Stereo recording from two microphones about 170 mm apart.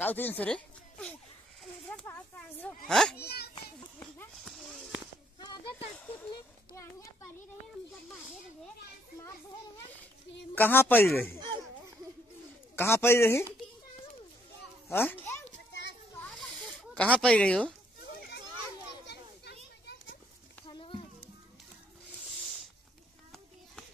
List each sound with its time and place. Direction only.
0.0 s a sound: 10° left (ahead or behind)
2.9 s speech: 5° left (ahead or behind)
3.2 s children playing: 70° left (ahead or behind)
4.4 s clip-clop: centre (ahead or behind)
6.7 s a child's voice: 15° left (ahead or behind)
10.5 s a man's voice: 10° left (ahead or behind)
11.3 s a sound: 25° right (ahead or behind)
12.7 s a man's voice: 15° left (ahead or behind)
14.9 s a child's voice: 15° left (ahead or behind)
15.5 s children playing: 90° left
16.9 s speech: 5° left (ahead or behind)
20.6 s a sound: 30° left (ahead or behind)